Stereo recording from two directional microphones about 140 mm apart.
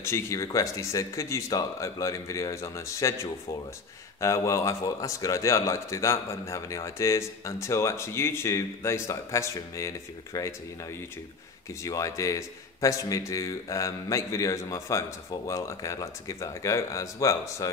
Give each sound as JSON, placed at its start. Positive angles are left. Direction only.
{"t": 0.0, "sound": "a man's voice", "side_deg": 20}